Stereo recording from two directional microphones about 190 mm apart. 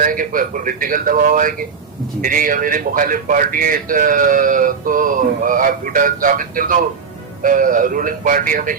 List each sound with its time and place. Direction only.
0.0 s a man's voice: 45° right (ahead or behind)